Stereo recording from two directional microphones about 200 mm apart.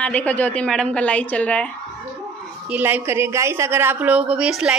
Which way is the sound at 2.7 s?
10° right (ahead or behind).